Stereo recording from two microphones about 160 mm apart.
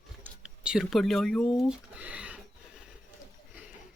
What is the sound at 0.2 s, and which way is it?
Speech, 5° right (ahead or behind).